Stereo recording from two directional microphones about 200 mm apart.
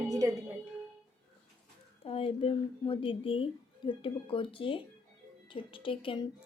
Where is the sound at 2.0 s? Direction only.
30° left (ahead or behind).